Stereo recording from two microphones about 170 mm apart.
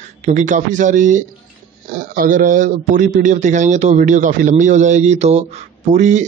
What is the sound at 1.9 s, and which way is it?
A man's voice, 60° right (ahead or behind).